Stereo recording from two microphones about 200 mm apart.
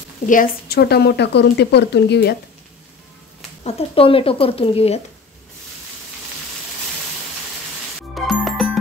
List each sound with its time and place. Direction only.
0.3 s a woman's voice: 45° left (ahead or behind)
3.6 s speech: 30° left (ahead or behind)
8.1 s music: centre (ahead or behind)